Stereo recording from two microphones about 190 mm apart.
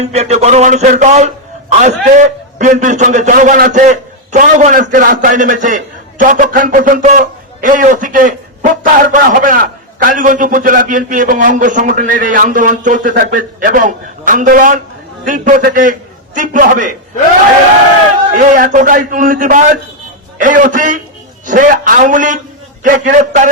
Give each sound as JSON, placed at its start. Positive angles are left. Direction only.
{"t": 0.0, "sound": "a man's voice", "side_deg": -35}
{"t": 18.3, "sound": "a man's voice", "side_deg": -45}